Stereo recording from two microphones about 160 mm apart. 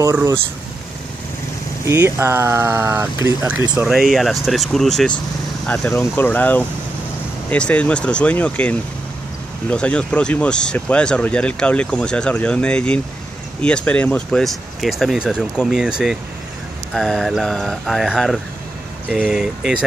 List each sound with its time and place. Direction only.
0.0 s speech: 15° right (ahead or behind)
1.9 s speech: 15° right (ahead or behind)
3.7 s speech: 5° right (ahead or behind)
5.7 s speech: 15° left (ahead or behind); by 19.8 s 5° right (ahead or behind)